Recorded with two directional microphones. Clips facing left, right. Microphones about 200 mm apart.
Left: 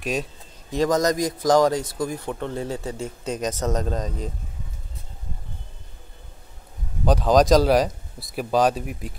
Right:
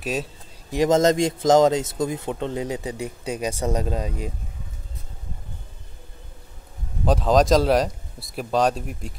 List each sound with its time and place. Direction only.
0.0 s a sound: 5° right (ahead or behind)
0.7 s speech: 25° right (ahead or behind); by 4.3 s 10° right (ahead or behind)
7.1 s speech: centre (ahead or behind)